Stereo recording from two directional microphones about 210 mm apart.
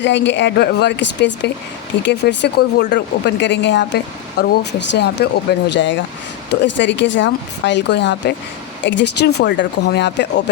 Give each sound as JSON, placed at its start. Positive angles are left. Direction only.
{"t": 0.0, "sound": "speech", "side_deg": 55}